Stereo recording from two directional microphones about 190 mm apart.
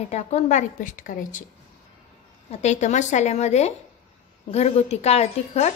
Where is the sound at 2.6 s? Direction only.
40° left (ahead or behind).